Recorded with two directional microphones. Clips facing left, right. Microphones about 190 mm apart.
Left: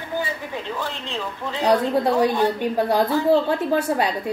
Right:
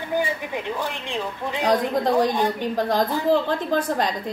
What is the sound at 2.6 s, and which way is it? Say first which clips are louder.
A woman's voice: left 2 dB; 10° left (ahead or behind).